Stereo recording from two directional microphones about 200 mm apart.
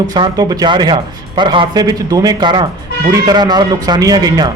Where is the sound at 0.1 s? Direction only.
20° right (ahead or behind).